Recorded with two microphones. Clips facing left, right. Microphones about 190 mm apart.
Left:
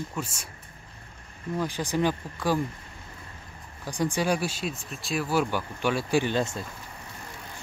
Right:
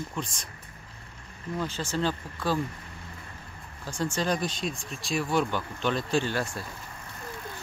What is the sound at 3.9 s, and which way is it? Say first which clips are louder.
Speech: left 2 dB; 15° left (ahead or behind).